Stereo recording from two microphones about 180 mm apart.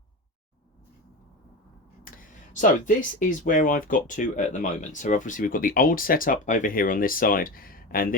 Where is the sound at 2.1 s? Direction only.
50° left (ahead or behind).